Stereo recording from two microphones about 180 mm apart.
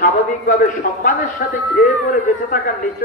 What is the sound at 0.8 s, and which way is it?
Speech, 45° left (ahead or behind).